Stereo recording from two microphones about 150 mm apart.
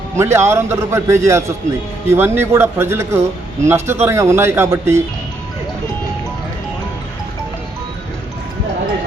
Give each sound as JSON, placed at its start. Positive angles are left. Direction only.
{"t": 0.2, "sound": "speech", "side_deg": -20}